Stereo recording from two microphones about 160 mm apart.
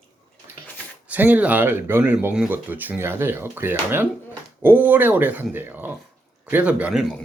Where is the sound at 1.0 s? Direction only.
10° right (ahead or behind).